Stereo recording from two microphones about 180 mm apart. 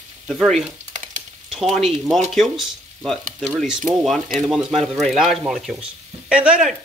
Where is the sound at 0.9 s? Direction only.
45° right (ahead or behind).